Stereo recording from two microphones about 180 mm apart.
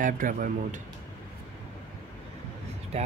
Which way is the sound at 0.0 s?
50° right (ahead or behind).